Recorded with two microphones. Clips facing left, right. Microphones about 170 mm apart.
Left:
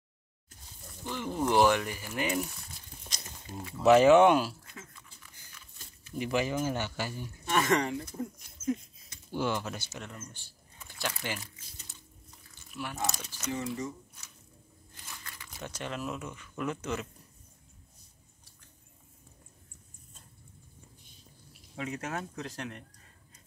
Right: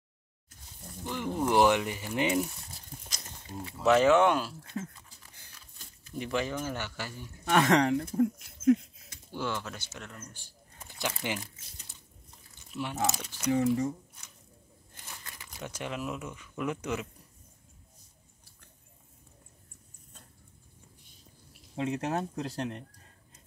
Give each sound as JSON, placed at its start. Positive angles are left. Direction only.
{"t": 1.0, "sound": "speech", "side_deg": -15}
{"t": 3.8, "sound": "speech", "side_deg": 10}
{"t": 6.1, "sound": "speech", "side_deg": 5}
{"t": 7.4, "sound": "speech", "side_deg": -65}
{"t": 9.3, "sound": "speech", "side_deg": 15}
{"t": 11.0, "sound": "speech", "side_deg": -20}
{"t": 12.7, "sound": "speech", "side_deg": -25}
{"t": 13.0, "sound": "speech", "side_deg": -5}
{"t": 15.0, "sound": "crumpling", "side_deg": -20}
{"t": 15.6, "sound": "speech", "side_deg": -10}
{"t": 21.7, "sound": "speech", "side_deg": -30}